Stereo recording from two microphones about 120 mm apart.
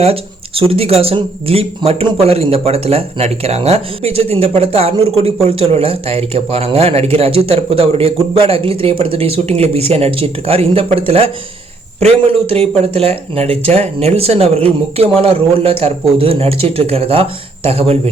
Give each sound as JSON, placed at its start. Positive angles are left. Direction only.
{"t": 0.0, "sound": "speech", "side_deg": -55}